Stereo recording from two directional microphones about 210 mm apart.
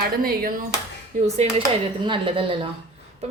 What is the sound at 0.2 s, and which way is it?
A woman's voice, 45° right (ahead or behind).